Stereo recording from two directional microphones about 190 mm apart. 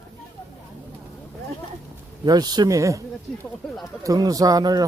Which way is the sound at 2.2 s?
20° right (ahead or behind).